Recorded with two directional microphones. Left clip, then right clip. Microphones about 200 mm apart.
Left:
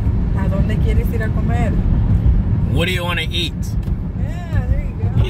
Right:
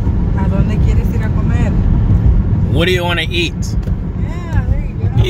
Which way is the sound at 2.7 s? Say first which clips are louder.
Right 6 dB; 10° right (ahead or behind).